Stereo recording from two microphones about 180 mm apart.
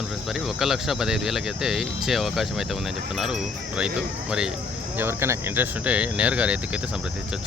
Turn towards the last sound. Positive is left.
turn(degrees=-5)  # may be behind; listen again after turning